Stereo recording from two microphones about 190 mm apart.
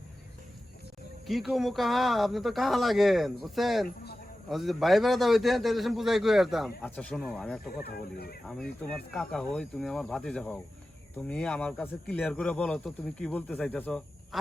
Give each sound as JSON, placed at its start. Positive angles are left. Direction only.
{"t": 1.3, "sound": "a man's voice", "side_deg": 0}
{"t": 7.8, "sound": "speech", "side_deg": 55}
{"t": 8.4, "sound": "a man's voice", "side_deg": 5}